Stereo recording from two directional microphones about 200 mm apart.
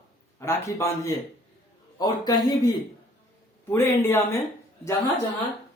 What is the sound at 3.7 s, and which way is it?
Speech, 10° left (ahead or behind).